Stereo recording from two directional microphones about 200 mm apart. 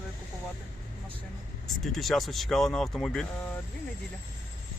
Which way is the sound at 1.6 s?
Centre (ahead or behind).